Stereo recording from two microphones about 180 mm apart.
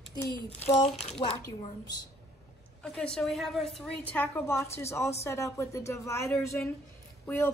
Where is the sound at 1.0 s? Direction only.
35° left (ahead or behind).